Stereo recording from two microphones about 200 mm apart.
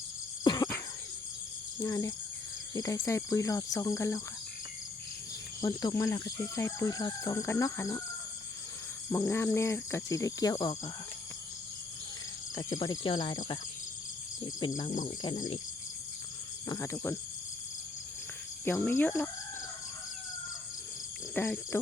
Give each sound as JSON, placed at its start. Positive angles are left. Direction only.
{"t": 0.4, "sound": "a sound", "side_deg": 20}
{"t": 1.8, "sound": "speech", "side_deg": 15}
{"t": 5.5, "sound": "speech", "side_deg": 20}
{"t": 9.1, "sound": "speech", "side_deg": 10}
{"t": 12.5, "sound": "speech", "side_deg": 20}
{"t": 14.8, "sound": "speech", "side_deg": 40}
{"t": 15.2, "sound": "speech", "side_deg": 20}
{"t": 16.6, "sound": "speech", "side_deg": 15}
{"t": 18.6, "sound": "speech", "side_deg": 10}
{"t": 21.3, "sound": "speech", "side_deg": 10}